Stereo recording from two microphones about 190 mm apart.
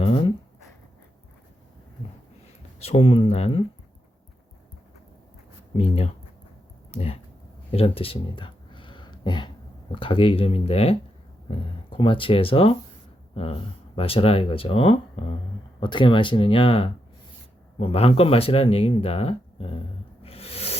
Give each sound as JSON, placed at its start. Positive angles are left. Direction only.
{"t": 0.0, "sound": "a sound", "side_deg": 30}
{"t": 2.7, "sound": "speech", "side_deg": 30}
{"t": 5.7, "sound": "speech", "side_deg": 30}
{"t": 7.7, "sound": "a sound", "side_deg": 30}
{"t": 9.9, "sound": "speech", "side_deg": 25}
{"t": 20.2, "sound": "snake", "side_deg": 30}